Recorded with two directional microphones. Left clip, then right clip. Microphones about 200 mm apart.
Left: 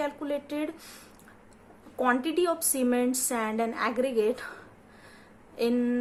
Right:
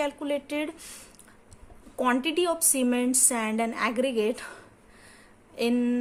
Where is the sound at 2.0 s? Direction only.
45° right (ahead or behind).